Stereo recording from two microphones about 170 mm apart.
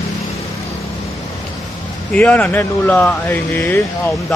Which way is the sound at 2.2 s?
10° left (ahead or behind).